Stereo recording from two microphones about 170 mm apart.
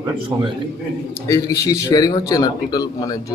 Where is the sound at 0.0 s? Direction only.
25° right (ahead or behind).